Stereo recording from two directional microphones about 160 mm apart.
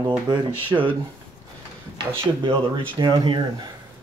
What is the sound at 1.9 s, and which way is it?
Speech, 30° right (ahead or behind).